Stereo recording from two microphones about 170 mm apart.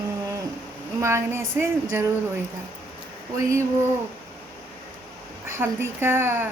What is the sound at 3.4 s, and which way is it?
Speech, 15° right (ahead or behind).